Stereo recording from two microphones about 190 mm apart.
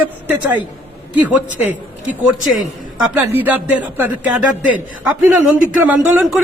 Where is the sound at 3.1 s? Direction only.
10° right (ahead or behind).